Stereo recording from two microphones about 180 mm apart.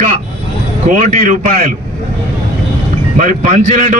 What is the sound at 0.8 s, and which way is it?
Speech, 45° right (ahead or behind).